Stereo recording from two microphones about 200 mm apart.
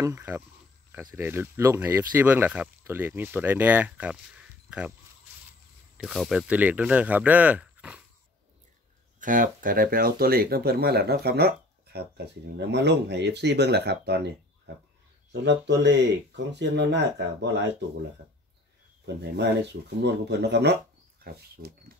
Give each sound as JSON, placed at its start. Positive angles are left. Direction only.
{"t": 0.0, "sound": "speech", "side_deg": -15}
{"t": 5.9, "sound": "speech", "side_deg": 0}
{"t": 9.2, "sound": "speech", "side_deg": -40}
{"t": 15.4, "sound": "speech", "side_deg": -60}
{"t": 19.3, "sound": "speech", "side_deg": -60}